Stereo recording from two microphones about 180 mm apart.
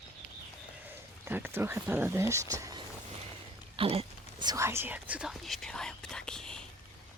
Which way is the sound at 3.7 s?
30° right (ahead or behind).